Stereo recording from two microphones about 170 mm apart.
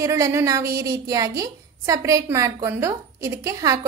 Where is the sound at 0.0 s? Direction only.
15° right (ahead or behind).